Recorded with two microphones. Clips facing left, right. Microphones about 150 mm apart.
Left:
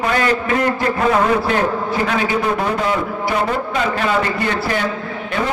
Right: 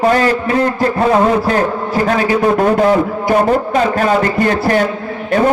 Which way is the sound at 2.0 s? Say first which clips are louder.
Right 8 dB; 45° right (ahead or behind).